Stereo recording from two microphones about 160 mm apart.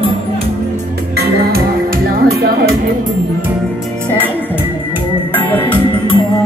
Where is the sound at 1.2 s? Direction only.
75° right (ahead or behind).